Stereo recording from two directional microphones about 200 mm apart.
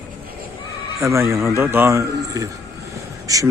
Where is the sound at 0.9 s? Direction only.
15° right (ahead or behind).